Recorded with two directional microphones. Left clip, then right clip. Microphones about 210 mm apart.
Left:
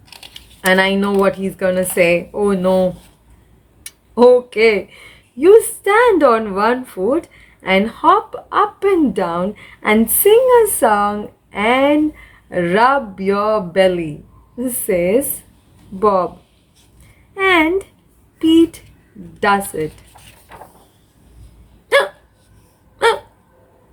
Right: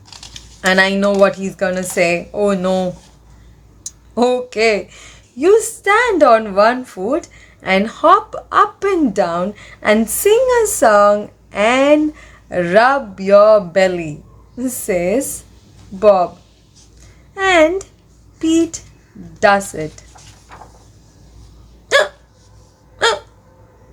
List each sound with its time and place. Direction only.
0.0 s typing: 10° left (ahead or behind)
0.3 s a sound: 20° right (ahead or behind)
1.2 s a woman's voice: 20° right (ahead or behind)
4.1 s a woman's voice: 20° right (ahead or behind)
17.3 s a child's voice: 20° right (ahead or behind)